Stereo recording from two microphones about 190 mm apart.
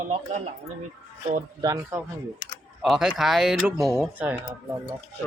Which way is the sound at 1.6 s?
20° right (ahead or behind).